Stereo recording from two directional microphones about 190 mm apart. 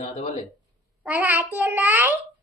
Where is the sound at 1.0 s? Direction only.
10° right (ahead or behind).